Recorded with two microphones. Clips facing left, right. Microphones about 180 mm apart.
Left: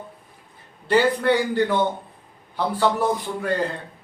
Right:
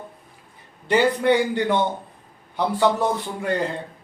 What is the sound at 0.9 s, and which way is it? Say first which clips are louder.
Speech: even; 20° right (ahead or behind).